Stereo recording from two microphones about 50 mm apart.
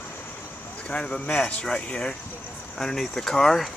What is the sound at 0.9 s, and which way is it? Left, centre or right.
Speech, left.